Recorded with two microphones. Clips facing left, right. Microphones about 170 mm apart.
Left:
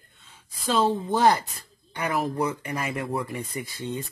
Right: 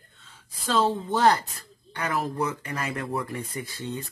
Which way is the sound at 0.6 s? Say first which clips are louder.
Left 1 dB; 15° left (ahead or behind).